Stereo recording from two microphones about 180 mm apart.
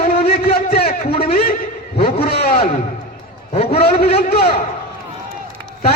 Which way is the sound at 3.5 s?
35° left (ahead or behind).